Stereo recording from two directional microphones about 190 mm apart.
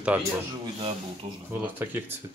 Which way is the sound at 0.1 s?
10° right (ahead or behind).